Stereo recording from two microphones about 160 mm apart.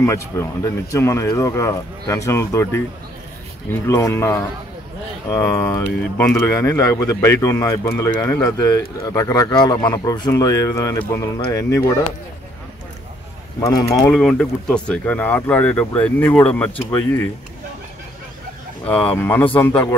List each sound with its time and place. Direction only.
0.0 s speech: 15° left (ahead or behind)
13.6 s speech: 20° left (ahead or behind)
14.1 s speech: 5° left (ahead or behind)
19.1 s speech: 15° left (ahead or behind)